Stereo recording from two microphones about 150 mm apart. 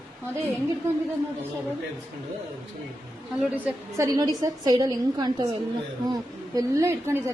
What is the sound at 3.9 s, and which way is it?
A woman's voice, 20° right (ahead or behind).